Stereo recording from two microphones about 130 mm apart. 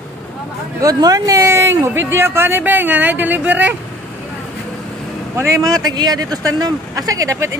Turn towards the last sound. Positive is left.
turn(degrees=-25)  # may be behind; listen again after turning